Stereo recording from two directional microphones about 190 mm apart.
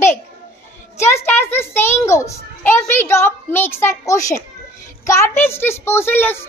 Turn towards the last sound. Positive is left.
turn(degrees=10)  # may be behind; listen again after turning